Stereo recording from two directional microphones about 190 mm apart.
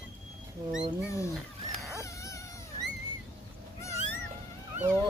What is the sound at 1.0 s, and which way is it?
Cat, 15° left (ahead or behind).